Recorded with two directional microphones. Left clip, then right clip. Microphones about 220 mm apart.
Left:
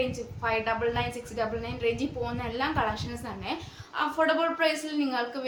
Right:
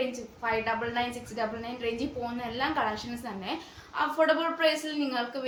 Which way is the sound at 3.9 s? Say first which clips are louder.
Even; 15° left (ahead or behind).